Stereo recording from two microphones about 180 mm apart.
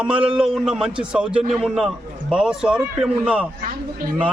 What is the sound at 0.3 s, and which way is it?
Speech, centre (ahead or behind).